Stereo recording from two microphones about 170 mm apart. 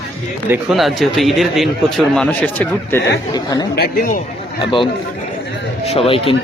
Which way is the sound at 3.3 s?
25° left (ahead or behind).